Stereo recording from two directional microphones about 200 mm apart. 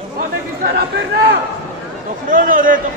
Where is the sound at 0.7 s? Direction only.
60° right (ahead or behind).